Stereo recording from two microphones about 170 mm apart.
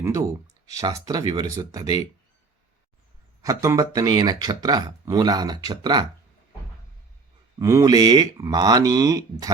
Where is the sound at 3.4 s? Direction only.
20° right (ahead or behind).